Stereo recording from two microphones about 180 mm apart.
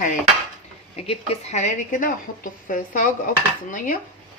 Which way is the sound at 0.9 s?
35° left (ahead or behind).